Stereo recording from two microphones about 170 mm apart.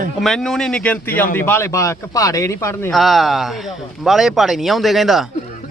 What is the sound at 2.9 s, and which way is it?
Speech, centre (ahead or behind).